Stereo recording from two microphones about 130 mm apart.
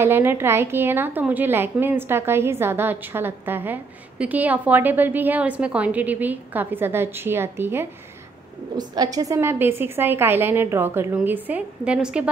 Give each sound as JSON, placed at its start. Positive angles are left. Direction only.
{"t": 0.0, "sound": "a woman's voice", "side_deg": -15}
{"t": 8.7, "sound": "a woman's voice", "side_deg": -30}